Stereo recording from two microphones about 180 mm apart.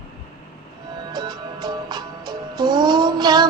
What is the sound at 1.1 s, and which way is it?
Music, 25° right (ahead or behind).